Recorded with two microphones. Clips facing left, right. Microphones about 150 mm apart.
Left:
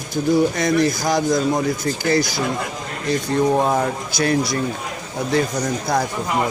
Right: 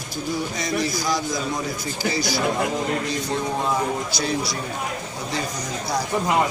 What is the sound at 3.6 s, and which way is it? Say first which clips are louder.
Speech: left 3 dB; 50° left (ahead or behind).